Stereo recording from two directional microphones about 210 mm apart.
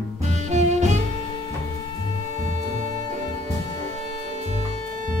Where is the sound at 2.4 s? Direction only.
35° right (ahead or behind).